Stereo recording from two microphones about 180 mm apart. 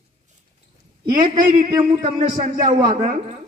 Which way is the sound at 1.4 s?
50° right (ahead or behind).